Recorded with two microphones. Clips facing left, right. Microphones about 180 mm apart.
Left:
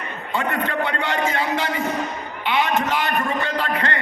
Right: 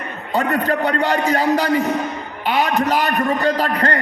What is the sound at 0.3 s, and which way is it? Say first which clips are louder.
A man's voice: right 5 dB; 40° right (ahead or behind).